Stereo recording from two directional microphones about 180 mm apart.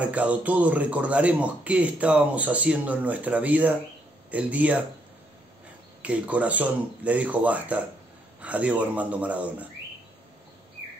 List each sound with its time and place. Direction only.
0.0 s a man's voice: 10° right (ahead or behind)
6.0 s a man's voice: 5° right (ahead or behind)